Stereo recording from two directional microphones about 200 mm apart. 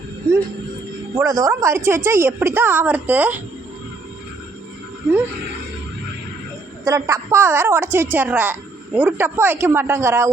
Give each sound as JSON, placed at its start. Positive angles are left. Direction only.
{"t": 1.1, "sound": "a woman's voice", "side_deg": -15}
{"t": 6.8, "sound": "a woman's voice", "side_deg": -15}